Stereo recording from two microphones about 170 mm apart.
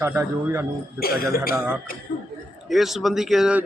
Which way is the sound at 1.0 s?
60° left (ahead or behind).